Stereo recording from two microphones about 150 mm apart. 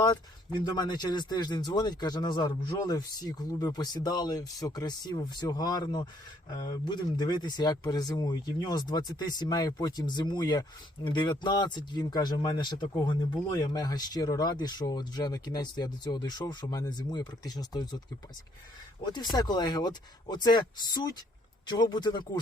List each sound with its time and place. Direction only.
0.0 s speech: 30° left (ahead or behind)
19.0 s speech: 30° left (ahead or behind)